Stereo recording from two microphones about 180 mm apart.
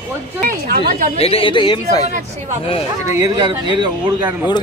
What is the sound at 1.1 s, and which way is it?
Speech, 35° left (ahead or behind).